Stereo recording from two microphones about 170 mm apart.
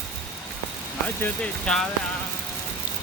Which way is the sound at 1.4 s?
5° left (ahead or behind).